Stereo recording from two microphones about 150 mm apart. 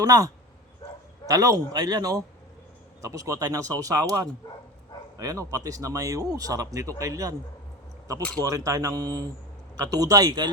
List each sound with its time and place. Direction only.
0.0 s speech: 25° right (ahead or behind)
1.3 s speech: 25° right (ahead or behind)
8.4 s speech: 20° right (ahead or behind)